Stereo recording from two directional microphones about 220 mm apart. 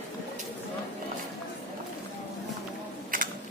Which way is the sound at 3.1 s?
40° right (ahead or behind).